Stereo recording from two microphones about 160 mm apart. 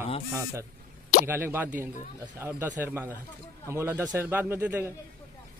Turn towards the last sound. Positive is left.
turn(degrees=-10)  # may be behind; listen again after turning